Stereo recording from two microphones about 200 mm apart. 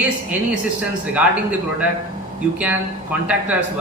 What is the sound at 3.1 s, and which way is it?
Speech, 10° right (ahead or behind).